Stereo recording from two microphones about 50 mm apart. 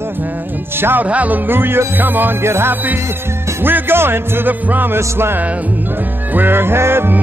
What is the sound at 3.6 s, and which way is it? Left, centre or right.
Speech, right.